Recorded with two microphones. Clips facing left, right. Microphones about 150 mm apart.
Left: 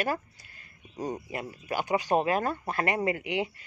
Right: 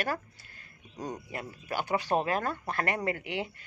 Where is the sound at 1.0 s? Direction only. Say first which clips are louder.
Left 4 dB; 5° left (ahead or behind).